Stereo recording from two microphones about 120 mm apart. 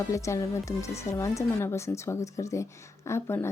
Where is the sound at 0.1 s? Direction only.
25° left (ahead or behind).